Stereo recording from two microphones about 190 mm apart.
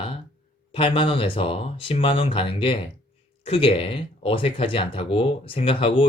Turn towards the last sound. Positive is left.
turn(degrees=30)  # may be behind; listen again after turning